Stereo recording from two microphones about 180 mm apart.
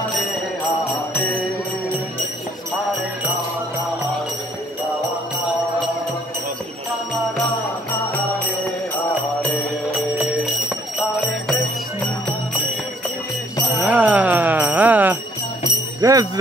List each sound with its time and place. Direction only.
8.9 s music: 10° left (ahead or behind)
10.1 s alarm clock: centre (ahead or behind)
13.7 s jingle bell: 10° right (ahead or behind)